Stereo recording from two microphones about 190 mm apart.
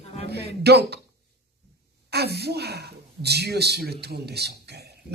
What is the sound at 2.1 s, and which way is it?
Speech, 60° right (ahead or behind).